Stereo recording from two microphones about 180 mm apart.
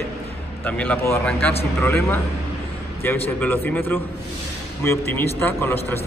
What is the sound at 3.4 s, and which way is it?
A man's voice, 10° left (ahead or behind).